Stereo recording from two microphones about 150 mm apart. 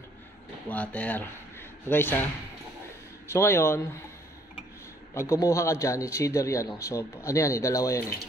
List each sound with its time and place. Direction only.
0.7 s speech: 10° left (ahead or behind)
3.3 s speech: 15° left (ahead or behind)
5.1 s a man's voice: 20° left (ahead or behind)